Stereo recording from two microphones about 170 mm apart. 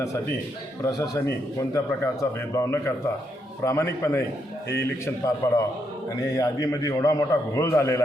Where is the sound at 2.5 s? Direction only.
15° left (ahead or behind).